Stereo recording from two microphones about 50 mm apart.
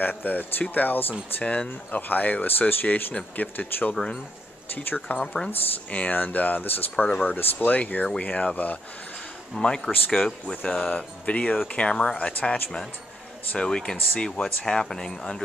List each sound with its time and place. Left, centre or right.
0.0 s speech: left
1.4 s speech: left
1.7 s speech: left
5.1 s speech: left
9.6 s speech: centre
11.9 s speech: centre
12.3 s speech: left
13.6 s speech: centre